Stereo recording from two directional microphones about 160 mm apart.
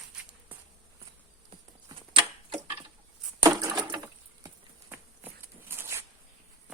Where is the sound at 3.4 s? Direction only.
20° right (ahead or behind).